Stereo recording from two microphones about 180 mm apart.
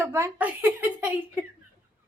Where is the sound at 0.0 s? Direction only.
15° right (ahead or behind).